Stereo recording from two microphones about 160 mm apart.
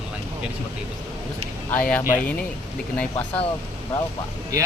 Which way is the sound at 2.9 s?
10° left (ahead or behind).